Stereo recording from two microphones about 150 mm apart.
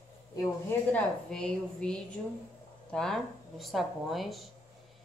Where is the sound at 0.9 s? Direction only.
5° left (ahead or behind).